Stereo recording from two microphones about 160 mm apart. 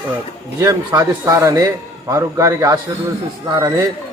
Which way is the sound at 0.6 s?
20° right (ahead or behind).